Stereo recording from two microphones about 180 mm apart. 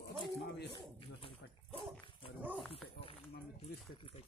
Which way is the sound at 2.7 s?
30° left (ahead or behind).